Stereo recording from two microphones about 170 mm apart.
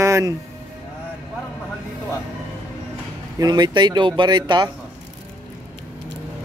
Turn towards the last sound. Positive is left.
turn(degrees=-25)  # may be behind; listen again after turning